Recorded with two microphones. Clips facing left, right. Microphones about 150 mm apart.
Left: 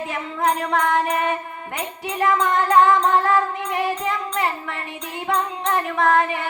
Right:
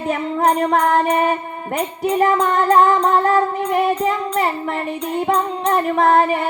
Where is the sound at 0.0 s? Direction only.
35° right (ahead or behind).